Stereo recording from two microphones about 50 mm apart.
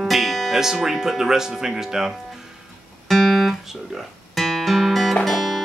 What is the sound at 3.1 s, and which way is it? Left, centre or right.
Guitar, centre.